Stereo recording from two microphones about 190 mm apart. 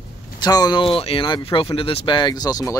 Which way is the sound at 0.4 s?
20° left (ahead or behind).